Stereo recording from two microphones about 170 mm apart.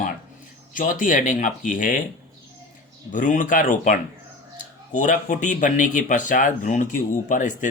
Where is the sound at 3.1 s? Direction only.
50° left (ahead or behind).